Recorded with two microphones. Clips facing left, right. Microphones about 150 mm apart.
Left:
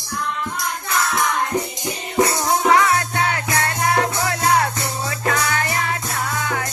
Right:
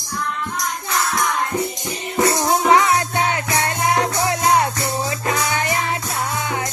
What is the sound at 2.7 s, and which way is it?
Music, 20° right (ahead or behind).